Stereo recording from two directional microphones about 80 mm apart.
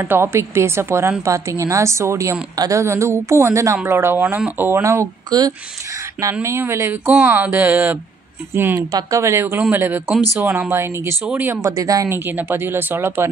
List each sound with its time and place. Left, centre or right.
0.0 s a woman's voice: right
4.2 s speech: centre
5.3 s speech: right
6.2 s speech: centre
6.6 s a woman's voice: right
11.6 s speech: right
12.1 s speech: right